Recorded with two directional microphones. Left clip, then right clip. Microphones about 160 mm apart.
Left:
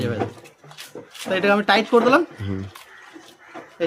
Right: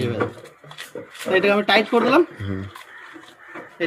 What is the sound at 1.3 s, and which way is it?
Speech, 35° left (ahead or behind).